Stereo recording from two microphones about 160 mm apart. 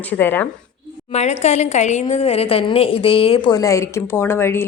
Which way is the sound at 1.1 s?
45° left (ahead or behind).